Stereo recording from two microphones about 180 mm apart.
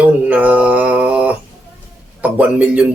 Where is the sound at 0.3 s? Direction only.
10° right (ahead or behind).